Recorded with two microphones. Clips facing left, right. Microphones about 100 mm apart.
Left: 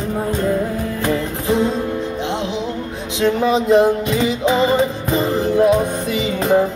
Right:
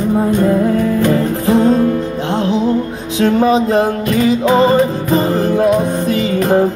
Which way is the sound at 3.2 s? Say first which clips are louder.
Right 3 dB; 40° right (ahead or behind).